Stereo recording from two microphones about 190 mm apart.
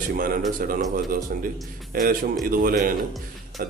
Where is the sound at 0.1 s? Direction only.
50° right (ahead or behind).